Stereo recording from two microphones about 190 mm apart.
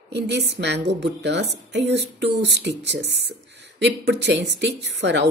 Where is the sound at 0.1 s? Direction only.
65° right (ahead or behind).